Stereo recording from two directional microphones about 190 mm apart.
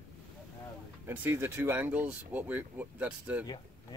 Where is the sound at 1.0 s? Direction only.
10° right (ahead or behind).